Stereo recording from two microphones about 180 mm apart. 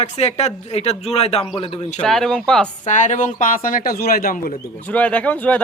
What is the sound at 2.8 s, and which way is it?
Speech, 45° left (ahead or behind).